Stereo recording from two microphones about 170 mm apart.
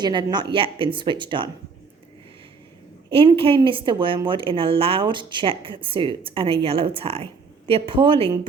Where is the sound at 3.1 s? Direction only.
35° right (ahead or behind).